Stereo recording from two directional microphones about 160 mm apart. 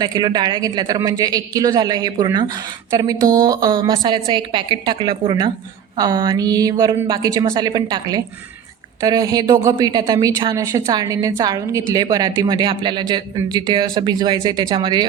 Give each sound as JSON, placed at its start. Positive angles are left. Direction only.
{"t": 0.0, "sound": "a woman's voice", "side_deg": -25}